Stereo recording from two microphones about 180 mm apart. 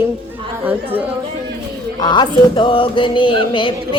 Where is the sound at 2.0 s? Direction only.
25° left (ahead or behind).